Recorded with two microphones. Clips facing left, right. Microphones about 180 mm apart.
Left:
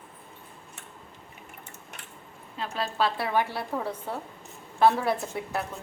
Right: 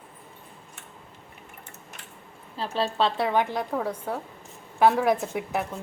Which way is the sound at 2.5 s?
30° right (ahead or behind).